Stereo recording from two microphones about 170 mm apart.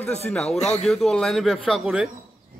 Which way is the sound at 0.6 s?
40° left (ahead or behind).